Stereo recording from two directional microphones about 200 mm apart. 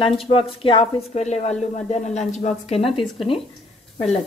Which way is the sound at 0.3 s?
30° left (ahead or behind).